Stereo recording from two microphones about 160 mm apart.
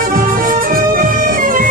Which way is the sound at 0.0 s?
60° right (ahead or behind).